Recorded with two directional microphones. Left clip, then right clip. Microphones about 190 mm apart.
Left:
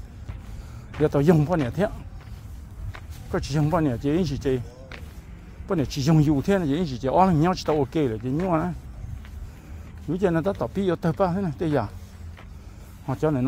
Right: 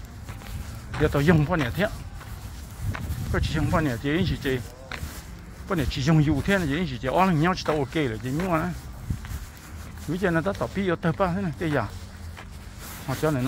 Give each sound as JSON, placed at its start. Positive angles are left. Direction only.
{"t": 1.0, "sound": "speech", "side_deg": 40}
{"t": 3.3, "sound": "speech", "side_deg": 40}
{"t": 5.7, "sound": "speech", "side_deg": 45}
{"t": 10.1, "sound": "speech", "side_deg": 45}
{"t": 13.1, "sound": "speech", "side_deg": 35}